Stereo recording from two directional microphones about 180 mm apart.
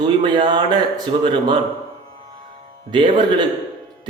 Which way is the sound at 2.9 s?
25° right (ahead or behind).